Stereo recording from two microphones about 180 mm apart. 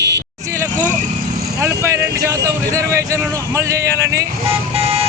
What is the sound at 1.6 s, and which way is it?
Speech, 15° right (ahead or behind).